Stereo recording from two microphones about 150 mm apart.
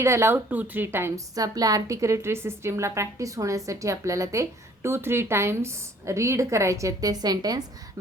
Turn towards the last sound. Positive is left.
turn(degrees=-25)  # may be behind; listen again after turning